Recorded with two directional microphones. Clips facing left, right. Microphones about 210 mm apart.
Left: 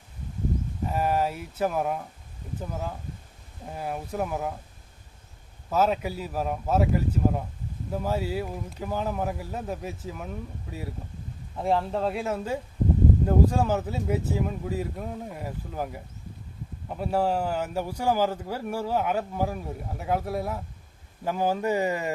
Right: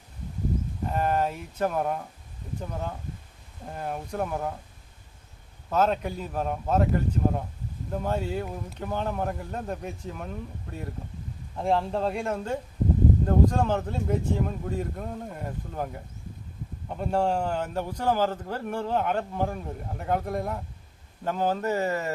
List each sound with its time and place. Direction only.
0.9 s a man's voice: 5° left (ahead or behind)
5.7 s a man's voice: 5° left (ahead or behind)